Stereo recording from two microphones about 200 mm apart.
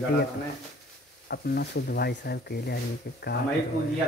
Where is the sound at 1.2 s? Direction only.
55° left (ahead or behind).